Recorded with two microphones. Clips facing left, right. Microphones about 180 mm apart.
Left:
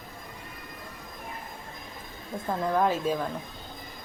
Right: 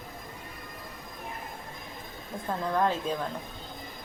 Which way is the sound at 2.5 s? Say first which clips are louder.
Left 2 dB; 10° left (ahead or behind).